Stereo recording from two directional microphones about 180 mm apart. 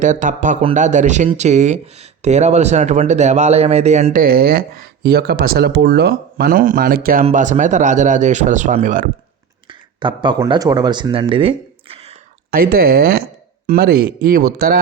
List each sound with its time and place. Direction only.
0.0 s a man's voice: 45° right (ahead or behind)
4.2 s speech: 55° right (ahead or behind)
7.3 s a man's voice: 40° right (ahead or behind)
9.6 s a sound: 25° right (ahead or behind)
10.5 s speech: 20° right (ahead or behind)
12.5 s speech: 55° right (ahead or behind)